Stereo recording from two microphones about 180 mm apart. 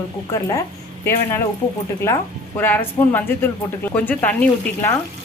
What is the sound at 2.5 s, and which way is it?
Speech, 10° left (ahead or behind).